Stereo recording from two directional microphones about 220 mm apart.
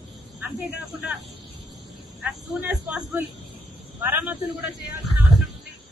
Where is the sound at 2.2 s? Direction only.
10° right (ahead or behind).